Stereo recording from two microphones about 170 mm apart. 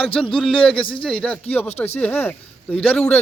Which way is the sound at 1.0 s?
5° left (ahead or behind).